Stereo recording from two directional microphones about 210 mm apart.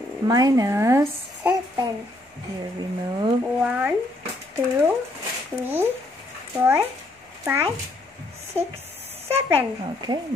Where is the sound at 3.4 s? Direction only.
5° right (ahead or behind).